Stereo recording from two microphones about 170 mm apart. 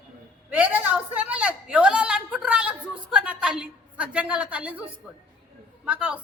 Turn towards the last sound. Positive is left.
turn(degrees=-10)  # may be behind; listen again after turning